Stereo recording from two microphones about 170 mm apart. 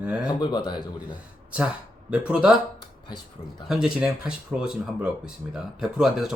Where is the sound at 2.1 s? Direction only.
5° right (ahead or behind).